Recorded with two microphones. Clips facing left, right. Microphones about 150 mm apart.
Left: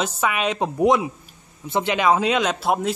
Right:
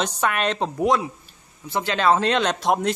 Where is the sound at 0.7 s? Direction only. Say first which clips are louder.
Left 5 dB; 20° left (ahead or behind).